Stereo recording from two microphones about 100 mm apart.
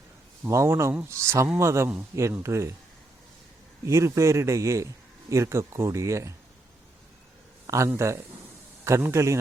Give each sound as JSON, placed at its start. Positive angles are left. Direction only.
{"t": 0.4, "sound": "a man's voice", "side_deg": -25}
{"t": 3.8, "sound": "a man's voice", "side_deg": -30}
{"t": 7.9, "sound": "a man's voice", "side_deg": -30}